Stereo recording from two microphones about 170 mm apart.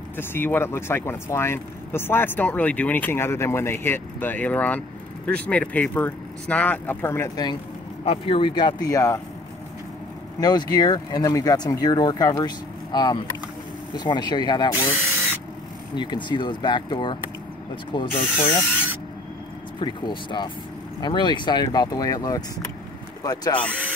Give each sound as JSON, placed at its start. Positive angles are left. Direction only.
{"t": 0.2, "sound": "speech", "side_deg": 10}
{"t": 8.0, "sound": "speech", "side_deg": 35}
{"t": 10.4, "sound": "speech", "side_deg": 25}
{"t": 16.0, "sound": "speech", "side_deg": 25}
{"t": 19.8, "sound": "speech", "side_deg": 30}